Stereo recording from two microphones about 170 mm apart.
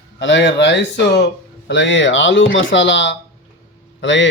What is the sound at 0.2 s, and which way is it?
Speech, 90° left.